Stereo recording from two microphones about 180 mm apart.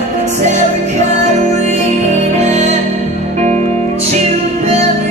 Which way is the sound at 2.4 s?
40° right (ahead or behind).